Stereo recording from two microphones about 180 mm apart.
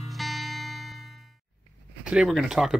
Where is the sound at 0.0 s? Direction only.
Centre (ahead or behind).